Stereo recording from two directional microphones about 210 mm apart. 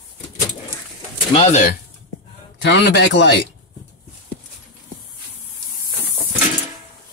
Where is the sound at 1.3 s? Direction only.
30° left (ahead or behind).